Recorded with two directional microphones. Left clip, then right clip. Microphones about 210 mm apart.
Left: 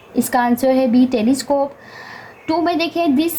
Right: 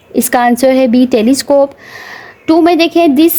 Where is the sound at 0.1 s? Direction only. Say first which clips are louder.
Right 7 dB; 55° right (ahead or behind).